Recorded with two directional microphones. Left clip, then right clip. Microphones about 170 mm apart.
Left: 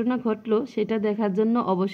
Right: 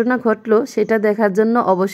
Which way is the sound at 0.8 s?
25° right (ahead or behind).